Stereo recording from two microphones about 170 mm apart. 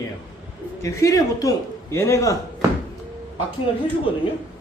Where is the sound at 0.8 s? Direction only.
20° left (ahead or behind).